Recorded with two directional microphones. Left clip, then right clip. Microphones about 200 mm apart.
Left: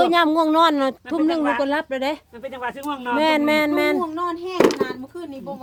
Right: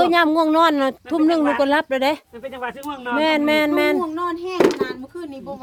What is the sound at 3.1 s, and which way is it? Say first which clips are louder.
A woman's voice: right 1 dB; 5° right (ahead or behind).